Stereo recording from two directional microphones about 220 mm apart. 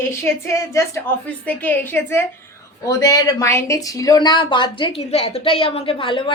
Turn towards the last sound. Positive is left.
turn(degrees=25)  # may be behind; listen again after turning